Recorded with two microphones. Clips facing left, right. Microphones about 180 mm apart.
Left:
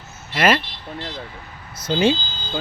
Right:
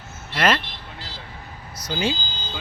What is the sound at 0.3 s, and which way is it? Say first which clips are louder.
Speech: left 3 dB; 10° left (ahead or behind).